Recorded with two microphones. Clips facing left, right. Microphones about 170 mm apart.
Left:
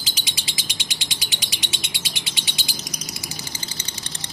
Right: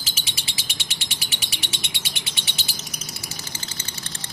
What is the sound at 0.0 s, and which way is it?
Bird, 15° left (ahead or behind).